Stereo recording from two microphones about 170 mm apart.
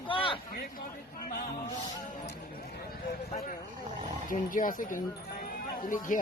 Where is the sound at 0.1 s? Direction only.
30° left (ahead or behind).